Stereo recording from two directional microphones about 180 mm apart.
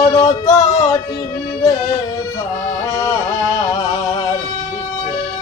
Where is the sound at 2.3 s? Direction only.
20° left (ahead or behind).